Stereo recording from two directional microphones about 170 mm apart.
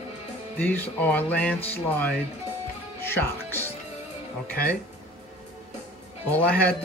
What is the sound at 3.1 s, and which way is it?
Speech, 15° left (ahead or behind).